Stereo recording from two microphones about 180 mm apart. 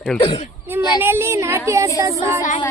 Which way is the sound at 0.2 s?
25° left (ahead or behind).